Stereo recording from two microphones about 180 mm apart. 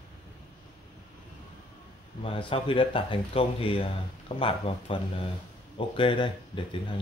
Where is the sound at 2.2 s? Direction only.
30° left (ahead or behind).